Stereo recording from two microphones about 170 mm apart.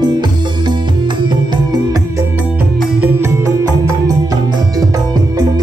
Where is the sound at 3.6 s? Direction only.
20° right (ahead or behind).